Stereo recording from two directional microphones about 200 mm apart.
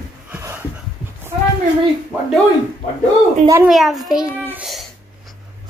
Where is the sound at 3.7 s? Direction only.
Centre (ahead or behind).